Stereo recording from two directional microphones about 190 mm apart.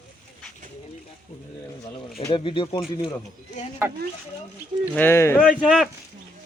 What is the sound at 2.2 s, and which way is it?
Speech, 25° left (ahead or behind).